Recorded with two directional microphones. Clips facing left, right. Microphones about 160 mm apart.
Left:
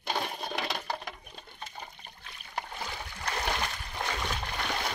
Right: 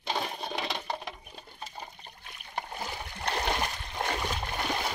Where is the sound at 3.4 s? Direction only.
20° right (ahead or behind).